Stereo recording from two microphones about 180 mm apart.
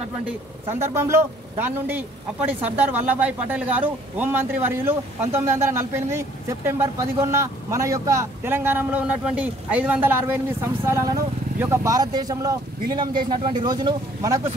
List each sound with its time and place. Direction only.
0.7 s speech: 15° right (ahead or behind)